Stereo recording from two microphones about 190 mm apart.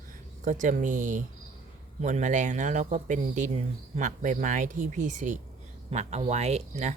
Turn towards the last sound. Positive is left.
turn(degrees=-35)  # may be behind; listen again after turning